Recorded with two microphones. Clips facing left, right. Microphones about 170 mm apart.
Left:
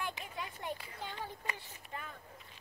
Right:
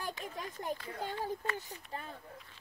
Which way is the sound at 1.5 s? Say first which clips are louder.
Right 5 dB; 35° right (ahead or behind).